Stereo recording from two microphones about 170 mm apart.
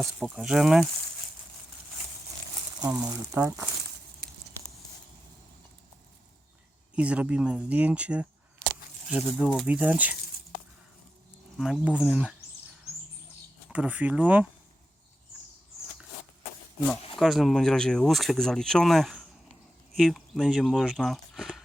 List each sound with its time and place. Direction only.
0.0 s speech: 5° right (ahead or behind)
2.8 s speech: 20° right (ahead or behind)
3.3 s speech: 10° right (ahead or behind)
6.9 s speech: 5° right (ahead or behind)
11.5 s speech: 5° right (ahead or behind)
13.7 s speech: 5° right (ahead or behind)
17.2 s speech: centre (ahead or behind)